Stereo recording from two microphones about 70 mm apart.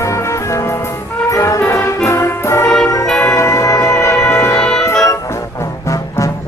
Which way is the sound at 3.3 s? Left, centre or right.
Left.